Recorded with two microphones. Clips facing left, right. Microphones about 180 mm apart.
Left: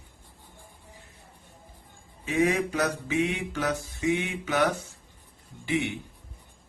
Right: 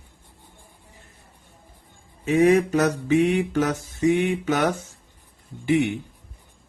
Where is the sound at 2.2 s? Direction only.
45° right (ahead or behind).